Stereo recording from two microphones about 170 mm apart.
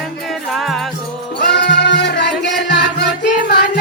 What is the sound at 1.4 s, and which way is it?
Music, 75° left (ahead or behind).